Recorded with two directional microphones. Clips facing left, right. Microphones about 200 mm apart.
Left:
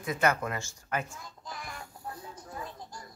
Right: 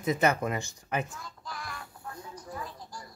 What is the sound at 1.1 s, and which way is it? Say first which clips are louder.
Child singing: right 1 dB; 20° left (ahead or behind).